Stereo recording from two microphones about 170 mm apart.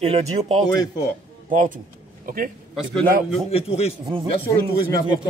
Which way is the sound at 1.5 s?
50° right (ahead or behind).